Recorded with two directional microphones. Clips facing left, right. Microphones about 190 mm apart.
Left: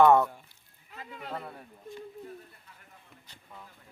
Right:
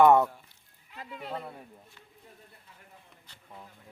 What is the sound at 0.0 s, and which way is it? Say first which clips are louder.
Speech: right 1 dB; 15° right (ahead or behind).